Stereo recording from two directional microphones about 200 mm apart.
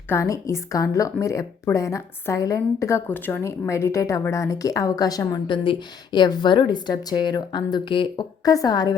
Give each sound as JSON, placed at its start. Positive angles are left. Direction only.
{"t": 0.1, "sound": "speech", "side_deg": 15}